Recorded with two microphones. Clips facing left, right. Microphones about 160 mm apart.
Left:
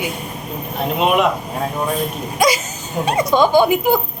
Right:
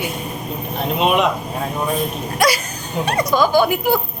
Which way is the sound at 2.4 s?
20° left (ahead or behind).